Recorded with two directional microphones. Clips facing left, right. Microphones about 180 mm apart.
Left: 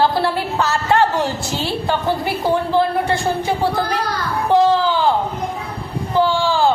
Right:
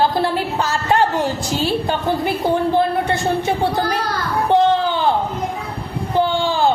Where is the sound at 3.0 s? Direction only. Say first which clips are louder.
Even; 20° right (ahead or behind).